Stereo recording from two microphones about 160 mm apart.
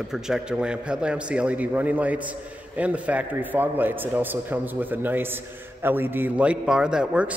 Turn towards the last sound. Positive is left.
turn(degrees=-5)  # may be behind; listen again after turning